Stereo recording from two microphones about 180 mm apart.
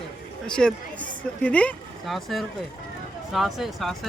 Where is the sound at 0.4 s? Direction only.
5° left (ahead or behind).